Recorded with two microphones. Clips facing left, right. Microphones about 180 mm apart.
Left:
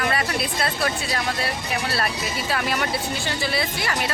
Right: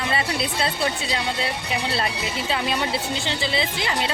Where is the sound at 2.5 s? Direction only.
25° right (ahead or behind).